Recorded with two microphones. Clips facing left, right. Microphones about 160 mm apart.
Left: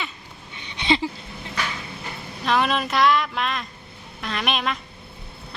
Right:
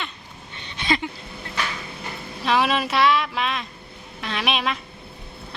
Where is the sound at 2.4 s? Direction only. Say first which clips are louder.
Right 1 dB; centre (ahead or behind).